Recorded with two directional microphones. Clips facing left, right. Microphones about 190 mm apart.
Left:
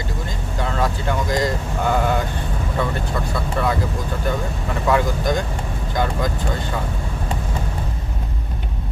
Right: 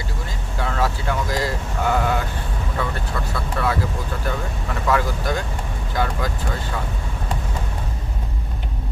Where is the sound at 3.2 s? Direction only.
15° left (ahead or behind).